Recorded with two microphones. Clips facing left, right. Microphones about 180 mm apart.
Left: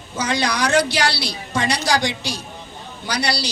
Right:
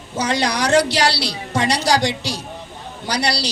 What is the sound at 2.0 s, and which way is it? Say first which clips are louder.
Speech: right 2 dB; 75° right (ahead or behind).